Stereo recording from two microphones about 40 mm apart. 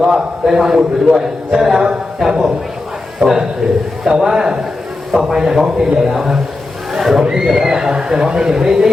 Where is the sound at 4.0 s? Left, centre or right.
Centre.